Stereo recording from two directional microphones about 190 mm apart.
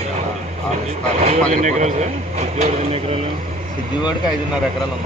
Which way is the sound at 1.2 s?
40° right (ahead or behind).